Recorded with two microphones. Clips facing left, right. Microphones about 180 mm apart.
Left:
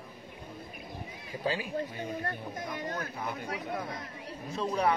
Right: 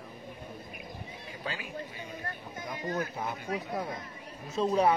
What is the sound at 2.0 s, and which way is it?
Speech, 55° left (ahead or behind).